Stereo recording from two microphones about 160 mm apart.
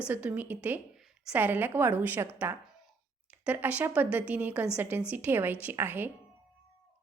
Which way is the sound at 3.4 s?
10° right (ahead or behind).